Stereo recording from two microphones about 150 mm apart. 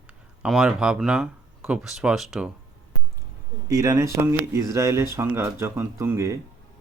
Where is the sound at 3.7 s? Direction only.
25° right (ahead or behind).